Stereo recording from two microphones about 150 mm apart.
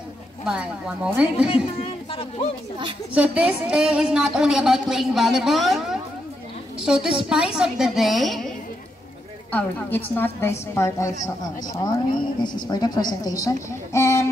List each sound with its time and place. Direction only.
0.5 s a woman's voice: 5° right (ahead or behind)
1.5 s speech: 40° left (ahead or behind)
3.2 s a woman's voice: 10° right (ahead or behind)
9.5 s a woman's voice: 10° left (ahead or behind)
12.6 s a woman's voice: 25° left (ahead or behind)